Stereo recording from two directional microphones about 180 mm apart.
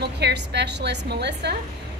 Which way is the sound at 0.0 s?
70° right (ahead or behind).